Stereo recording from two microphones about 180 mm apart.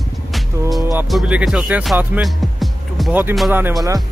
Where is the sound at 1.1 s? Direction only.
5° right (ahead or behind).